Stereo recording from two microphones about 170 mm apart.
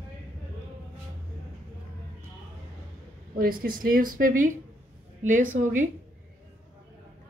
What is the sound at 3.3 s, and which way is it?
Speech, 55° right (ahead or behind).